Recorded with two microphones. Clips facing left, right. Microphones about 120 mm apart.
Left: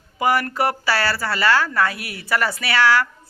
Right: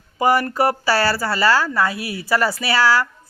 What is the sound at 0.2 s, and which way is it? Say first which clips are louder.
A woman's voice: right 3 dB; 35° right (ahead or behind).